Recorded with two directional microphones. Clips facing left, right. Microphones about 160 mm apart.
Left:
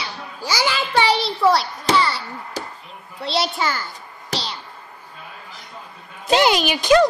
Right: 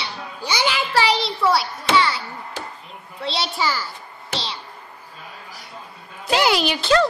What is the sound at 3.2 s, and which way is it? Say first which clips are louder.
Child singing: left 2 dB; centre (ahead or behind).